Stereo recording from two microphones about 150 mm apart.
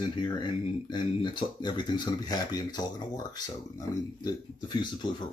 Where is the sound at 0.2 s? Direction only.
30° left (ahead or behind).